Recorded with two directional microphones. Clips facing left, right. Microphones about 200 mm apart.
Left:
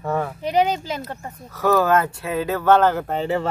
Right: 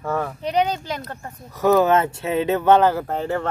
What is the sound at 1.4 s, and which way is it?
Speech, 15° right (ahead or behind).